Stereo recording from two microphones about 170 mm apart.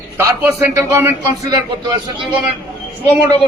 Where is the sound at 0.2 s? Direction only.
15° right (ahead or behind).